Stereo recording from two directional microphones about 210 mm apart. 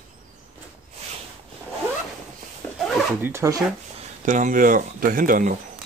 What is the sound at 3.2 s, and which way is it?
Speech, 10° right (ahead or behind).